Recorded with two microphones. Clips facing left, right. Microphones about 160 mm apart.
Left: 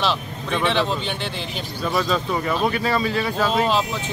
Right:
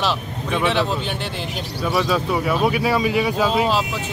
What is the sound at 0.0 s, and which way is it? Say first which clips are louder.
Speech: right 1 dB; 5° right (ahead or behind).